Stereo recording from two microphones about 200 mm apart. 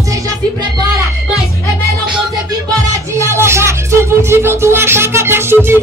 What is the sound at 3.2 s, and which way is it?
Music, 15° right (ahead or behind).